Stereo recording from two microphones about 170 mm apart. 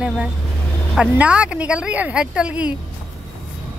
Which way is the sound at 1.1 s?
10° right (ahead or behind).